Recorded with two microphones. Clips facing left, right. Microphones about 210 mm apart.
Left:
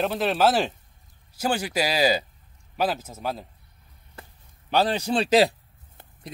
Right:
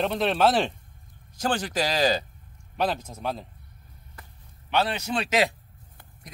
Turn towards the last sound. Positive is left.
turn(degrees=35)  # may be behind; listen again after turning